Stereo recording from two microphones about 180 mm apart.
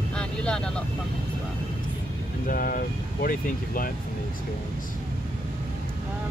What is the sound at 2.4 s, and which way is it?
Speech, 55° left (ahead or behind).